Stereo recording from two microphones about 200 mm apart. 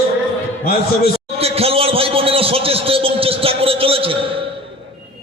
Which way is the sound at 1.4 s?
30° right (ahead or behind).